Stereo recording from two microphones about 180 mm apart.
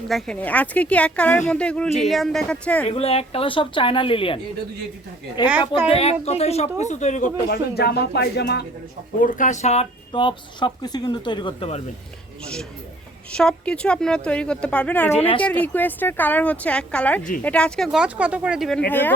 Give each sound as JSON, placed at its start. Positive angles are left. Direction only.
{"t": 0.1, "sound": "speech", "side_deg": 0}
{"t": 2.8, "sound": "speech", "side_deg": 35}
{"t": 5.5, "sound": "speech", "side_deg": -10}
{"t": 5.9, "sound": "speech", "side_deg": 35}
{"t": 9.2, "sound": "speech", "side_deg": 45}
{"t": 10.1, "sound": "speech", "side_deg": 25}
{"t": 13.3, "sound": "speech", "side_deg": 5}
{"t": 15.1, "sound": "speech", "side_deg": 35}
{"t": 15.4, "sound": "speech", "side_deg": 5}
{"t": 18.9, "sound": "speech", "side_deg": 10}